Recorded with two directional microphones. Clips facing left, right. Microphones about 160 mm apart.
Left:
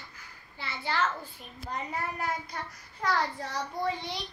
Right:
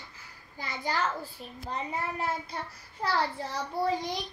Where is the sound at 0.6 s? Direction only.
40° right (ahead or behind).